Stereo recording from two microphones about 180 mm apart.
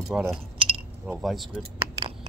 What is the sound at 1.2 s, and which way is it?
Speech, centre (ahead or behind).